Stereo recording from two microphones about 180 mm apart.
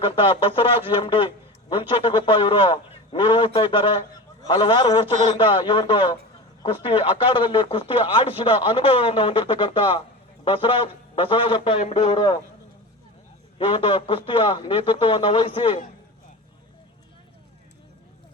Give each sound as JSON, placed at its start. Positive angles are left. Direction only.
{"t": 0.0, "sound": "speech", "side_deg": 30}
{"t": 12.1, "sound": "speech", "side_deg": 25}
{"t": 13.6, "sound": "speech", "side_deg": 30}